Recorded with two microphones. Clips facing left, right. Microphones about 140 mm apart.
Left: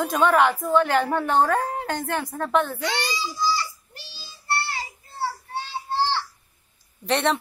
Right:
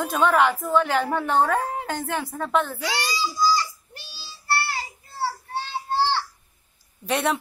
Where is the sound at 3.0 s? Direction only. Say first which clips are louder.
Right 2 dB; centre (ahead or behind).